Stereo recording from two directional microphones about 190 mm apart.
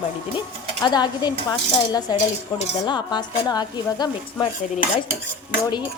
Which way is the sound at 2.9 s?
20° left (ahead or behind).